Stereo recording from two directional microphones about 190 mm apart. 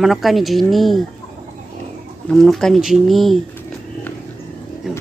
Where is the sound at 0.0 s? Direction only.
Centre (ahead or behind).